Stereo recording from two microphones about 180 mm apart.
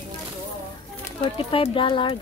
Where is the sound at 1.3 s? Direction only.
30° left (ahead or behind).